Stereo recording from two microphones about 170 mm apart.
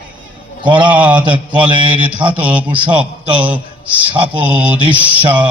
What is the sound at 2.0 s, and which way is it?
Mantra, 10° right (ahead or behind).